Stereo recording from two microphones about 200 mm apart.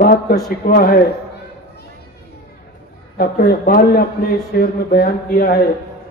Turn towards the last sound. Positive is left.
turn(degrees=50)  # may be behind; listen again after turning